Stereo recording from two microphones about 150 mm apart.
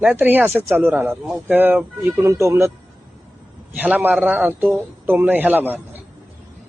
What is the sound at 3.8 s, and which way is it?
A man's voice, 10° right (ahead or behind).